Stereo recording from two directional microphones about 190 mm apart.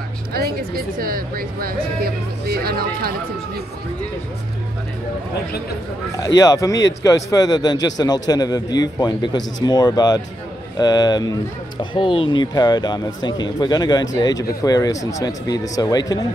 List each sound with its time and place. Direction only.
0.3 s speech: 50° right (ahead or behind)
6.2 s speech: 20° left (ahead or behind)